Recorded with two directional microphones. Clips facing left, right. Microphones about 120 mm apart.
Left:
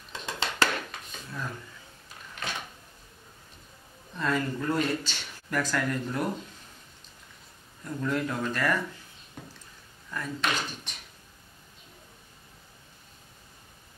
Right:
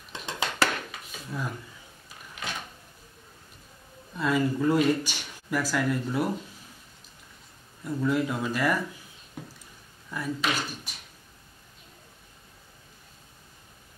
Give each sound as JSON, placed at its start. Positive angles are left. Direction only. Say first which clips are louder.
{"t": 0.1, "sound": "a sound", "louder": "right 1 dB", "side_deg": -15}
{"t": 0.9, "sound": "a sound", "louder": "even", "side_deg": 0}
{"t": 1.3, "sound": "speech", "louder": "right 3 dB", "side_deg": -10}
{"t": 4.1, "sound": "speech", "louder": "right 3 dB", "side_deg": -10}
{"t": 7.8, "sound": "speech", "louder": "right 3 dB", "side_deg": -10}
{"t": 10.1, "sound": "speech", "louder": "right 1 dB", "side_deg": -10}